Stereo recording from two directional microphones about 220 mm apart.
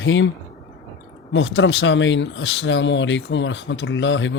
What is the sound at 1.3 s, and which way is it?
Speech, 55° left (ahead or behind).